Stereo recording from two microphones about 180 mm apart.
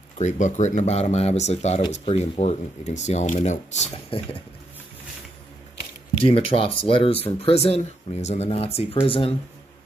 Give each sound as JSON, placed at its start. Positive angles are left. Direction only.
{"t": 0.2, "sound": "speech", "side_deg": 40}
{"t": 6.2, "sound": "speech", "side_deg": 30}